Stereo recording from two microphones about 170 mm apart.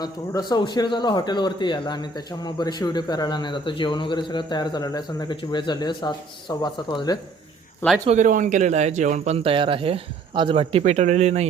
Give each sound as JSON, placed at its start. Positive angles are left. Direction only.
{"t": 0.0, "sound": "speech", "side_deg": 25}
{"t": 8.0, "sound": "speech", "side_deg": -45}